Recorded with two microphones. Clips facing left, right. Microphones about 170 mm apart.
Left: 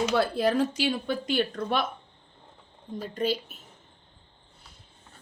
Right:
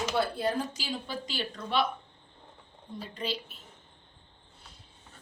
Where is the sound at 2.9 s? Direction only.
45° left (ahead or behind).